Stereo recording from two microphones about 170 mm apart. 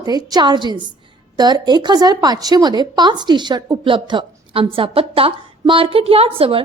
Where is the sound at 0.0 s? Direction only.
25° right (ahead or behind).